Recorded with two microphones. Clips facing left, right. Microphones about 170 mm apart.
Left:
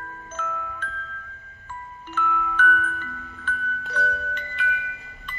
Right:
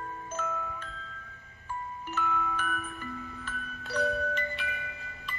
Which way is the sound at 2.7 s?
20° right (ahead or behind).